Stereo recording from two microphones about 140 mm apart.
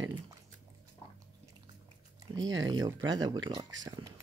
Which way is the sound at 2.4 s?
30° right (ahead or behind).